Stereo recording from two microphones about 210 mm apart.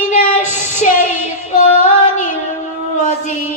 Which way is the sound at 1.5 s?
35° left (ahead or behind).